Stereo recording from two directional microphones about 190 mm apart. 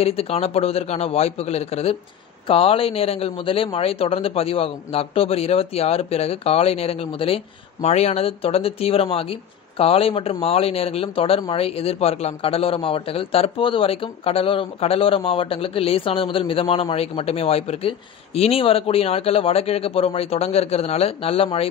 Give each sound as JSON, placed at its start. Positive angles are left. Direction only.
{"t": 0.0, "sound": "speech", "side_deg": 30}